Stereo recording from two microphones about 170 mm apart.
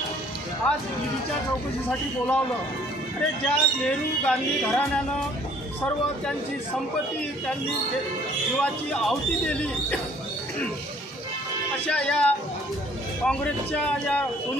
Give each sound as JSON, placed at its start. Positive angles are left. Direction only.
{"t": 0.7, "sound": "speech", "side_deg": 5}
{"t": 1.9, "sound": "speech", "side_deg": 10}
{"t": 3.4, "sound": "speech", "side_deg": 5}
{"t": 8.5, "sound": "speech", "side_deg": 5}
{"t": 11.9, "sound": "speech", "side_deg": 10}